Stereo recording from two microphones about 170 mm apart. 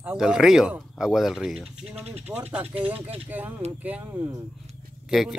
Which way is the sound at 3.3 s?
10° right (ahead or behind).